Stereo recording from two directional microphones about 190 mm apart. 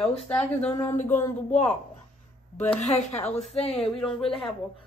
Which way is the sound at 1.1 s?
35° left (ahead or behind).